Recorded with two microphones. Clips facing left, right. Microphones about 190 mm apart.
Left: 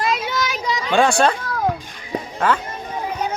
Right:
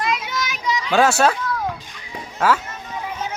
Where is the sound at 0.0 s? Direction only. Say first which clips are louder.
Left 3 dB; 30° left (ahead or behind).